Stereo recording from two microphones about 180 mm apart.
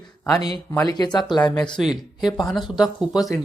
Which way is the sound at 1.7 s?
Centre (ahead or behind).